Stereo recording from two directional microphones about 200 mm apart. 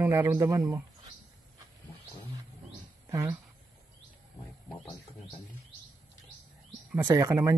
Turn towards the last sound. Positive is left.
turn(degrees=-15)  # may be behind; listen again after turning